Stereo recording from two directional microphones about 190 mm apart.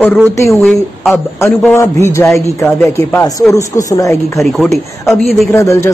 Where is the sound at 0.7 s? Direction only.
Centre (ahead or behind).